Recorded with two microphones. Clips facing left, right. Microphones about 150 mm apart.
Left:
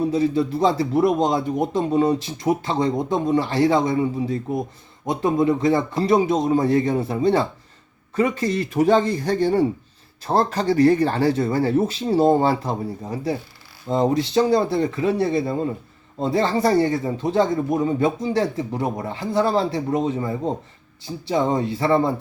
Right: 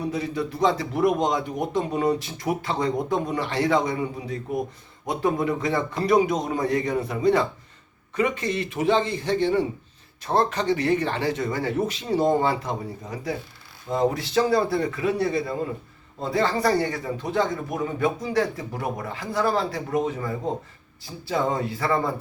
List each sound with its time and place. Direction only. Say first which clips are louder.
0.0 s a man's voice: left 7 dB; 30° left (ahead or behind)